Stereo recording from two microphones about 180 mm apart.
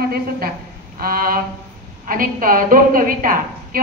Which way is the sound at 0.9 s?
55° right (ahead or behind).